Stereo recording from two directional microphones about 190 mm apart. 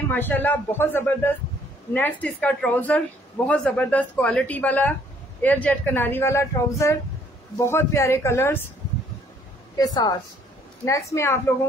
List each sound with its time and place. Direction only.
0.1 s speech: 10° left (ahead or behind)
9.8 s a woman's voice: 20° left (ahead or behind)